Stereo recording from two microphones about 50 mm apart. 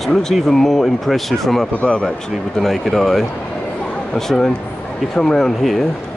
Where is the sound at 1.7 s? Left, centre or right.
Left.